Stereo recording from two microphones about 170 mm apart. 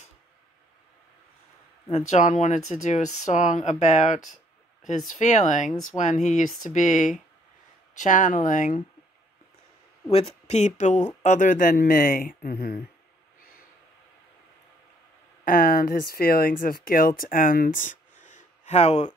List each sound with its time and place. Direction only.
1.9 s speech: 40° left (ahead or behind)
10.1 s speech: 40° left (ahead or behind); by 12.8 s 60° left (ahead or behind)
15.4 s speech: 60° left (ahead or behind); by 19.1 s 40° left (ahead or behind)